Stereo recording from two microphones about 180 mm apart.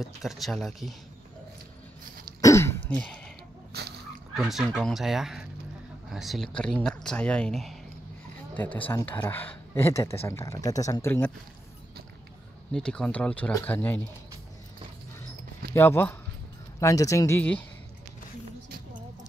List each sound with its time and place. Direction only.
0.0 s speech: centre (ahead or behind)
2.4 s throat clearing: 15° left (ahead or behind)
4.4 s speech: centre (ahead or behind)
12.7 s speech: 5° left (ahead or behind)
15.7 s speech: 15° left (ahead or behind)